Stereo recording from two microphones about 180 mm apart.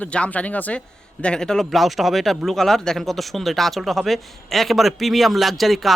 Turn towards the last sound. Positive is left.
turn(degrees=0)  # may be behind; listen again after turning